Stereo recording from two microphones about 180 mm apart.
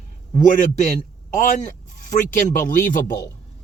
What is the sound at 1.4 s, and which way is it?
Speech, 45° left (ahead or behind).